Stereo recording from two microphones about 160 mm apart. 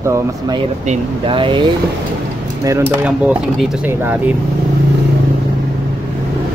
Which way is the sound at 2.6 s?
20° right (ahead or behind).